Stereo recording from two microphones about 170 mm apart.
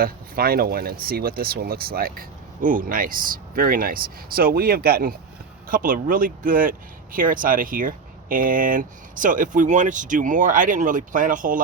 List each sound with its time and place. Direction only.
0.0 s speech: 60° right (ahead or behind)